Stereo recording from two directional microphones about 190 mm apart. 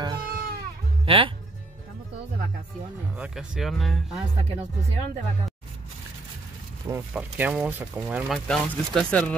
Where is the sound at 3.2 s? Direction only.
Centre (ahead or behind).